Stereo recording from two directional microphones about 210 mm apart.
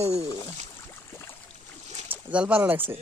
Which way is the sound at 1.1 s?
10° left (ahead or behind).